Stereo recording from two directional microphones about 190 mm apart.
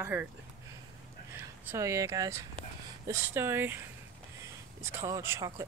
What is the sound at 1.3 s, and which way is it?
Speech, 15° right (ahead or behind).